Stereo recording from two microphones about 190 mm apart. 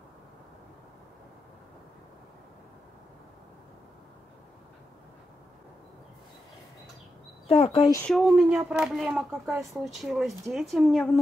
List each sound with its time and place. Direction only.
7.4 s speech: 35° left (ahead or behind)
8.0 s speech: centre (ahead or behind)